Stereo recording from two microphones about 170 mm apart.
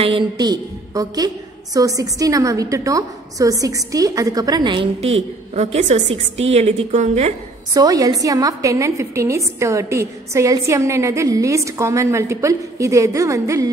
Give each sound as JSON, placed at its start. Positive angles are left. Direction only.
{"t": 0.0, "sound": "a woman's voice", "side_deg": -25}
{"t": 7.7, "sound": "a woman's voice", "side_deg": -20}